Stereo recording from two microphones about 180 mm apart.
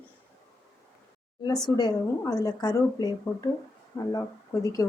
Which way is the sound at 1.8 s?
20° left (ahead or behind).